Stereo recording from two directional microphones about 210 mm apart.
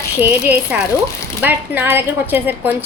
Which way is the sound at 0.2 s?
10° right (ahead or behind).